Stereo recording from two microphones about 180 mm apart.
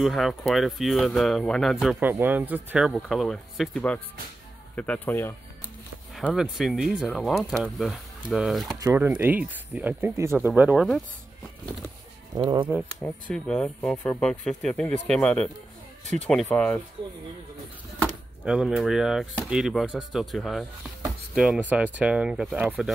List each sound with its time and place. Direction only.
0.0 s speech: centre (ahead or behind)
6.1 s speech: 5° right (ahead or behind)
8.7 s speech: 15° right (ahead or behind)
12.4 s speech: 25° right (ahead or behind)
13.3 s speech: 5° left (ahead or behind)
18.0 s speech: 5° right (ahead or behind)